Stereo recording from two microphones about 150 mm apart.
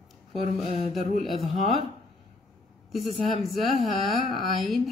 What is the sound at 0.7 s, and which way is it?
Mantra, 50° right (ahead or behind).